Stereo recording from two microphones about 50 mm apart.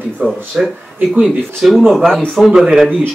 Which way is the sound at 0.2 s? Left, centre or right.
Right.